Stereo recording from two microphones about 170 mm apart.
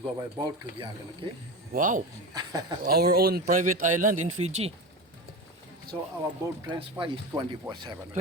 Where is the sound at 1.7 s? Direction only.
50° right (ahead or behind).